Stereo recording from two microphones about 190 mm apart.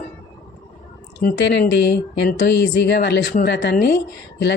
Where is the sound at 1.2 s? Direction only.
65° left (ahead or behind).